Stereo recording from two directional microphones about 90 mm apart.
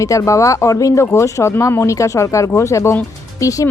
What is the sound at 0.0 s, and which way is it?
A woman's voice, 35° left (ahead or behind).